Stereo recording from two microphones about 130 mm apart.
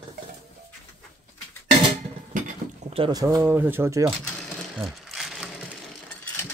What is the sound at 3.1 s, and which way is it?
Speech, 25° right (ahead or behind).